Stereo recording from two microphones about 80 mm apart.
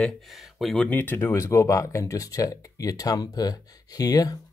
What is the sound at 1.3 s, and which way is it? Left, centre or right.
Speech, left.